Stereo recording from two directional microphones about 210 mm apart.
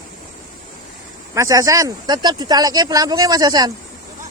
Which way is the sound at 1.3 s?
15° right (ahead or behind).